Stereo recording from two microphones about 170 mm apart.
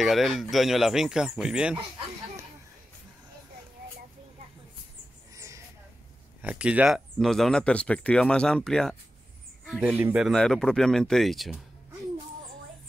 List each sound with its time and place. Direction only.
0.0 s speech: centre (ahead or behind)
5.3 s a sound: 20° right (ahead or behind)
6.4 s speech: 5° right (ahead or behind)